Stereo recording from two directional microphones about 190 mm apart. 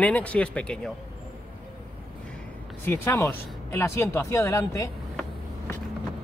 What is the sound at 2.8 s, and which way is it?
Speech, 15° left (ahead or behind).